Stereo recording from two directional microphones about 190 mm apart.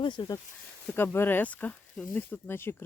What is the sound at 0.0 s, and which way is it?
Speech, 25° left (ahead or behind).